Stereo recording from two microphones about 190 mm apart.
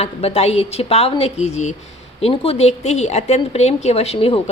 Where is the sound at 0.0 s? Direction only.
35° left (ahead or behind).